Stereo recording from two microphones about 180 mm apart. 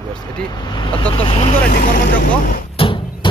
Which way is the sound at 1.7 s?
50° left (ahead or behind).